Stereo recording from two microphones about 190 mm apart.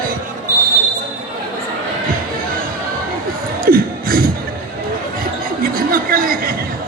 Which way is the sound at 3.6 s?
50° right (ahead or behind).